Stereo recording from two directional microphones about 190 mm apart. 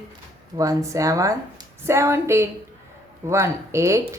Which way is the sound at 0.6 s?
15° right (ahead or behind).